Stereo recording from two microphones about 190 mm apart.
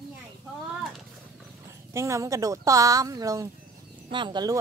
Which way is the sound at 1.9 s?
15° right (ahead or behind).